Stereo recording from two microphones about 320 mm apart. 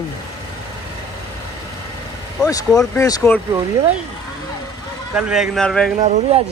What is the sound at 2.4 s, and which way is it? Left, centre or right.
Speech, centre.